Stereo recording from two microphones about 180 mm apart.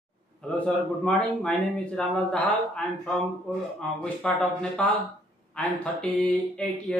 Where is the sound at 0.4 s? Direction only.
5° left (ahead or behind).